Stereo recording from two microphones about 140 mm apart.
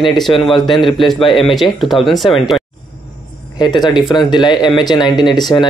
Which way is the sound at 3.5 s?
30° left (ahead or behind).